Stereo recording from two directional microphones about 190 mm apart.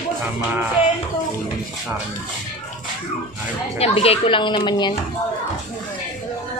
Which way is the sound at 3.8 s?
30° left (ahead or behind).